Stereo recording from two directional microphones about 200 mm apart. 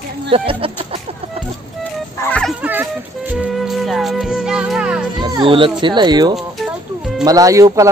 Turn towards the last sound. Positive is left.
turn(degrees=-15)  # may be behind; listen again after turning